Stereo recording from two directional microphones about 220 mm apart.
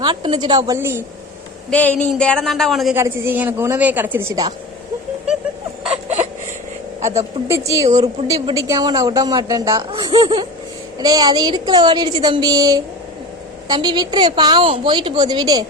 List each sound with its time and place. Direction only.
0.0 s a woman's voice: 20° right (ahead or behind)
1.7 s speech: 5° left (ahead or behind); by 4.5 s 15° right (ahead or behind)
7.0 s a woman's voice: 15° right (ahead or behind)